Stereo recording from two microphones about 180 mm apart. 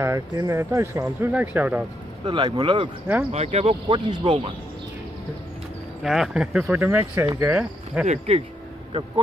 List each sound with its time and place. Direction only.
0.0 s speech: 15° right (ahead or behind)
2.2 s speech: 25° right (ahead or behind)
6.0 s speech: centre (ahead or behind)
8.1 s speech: 35° right (ahead or behind)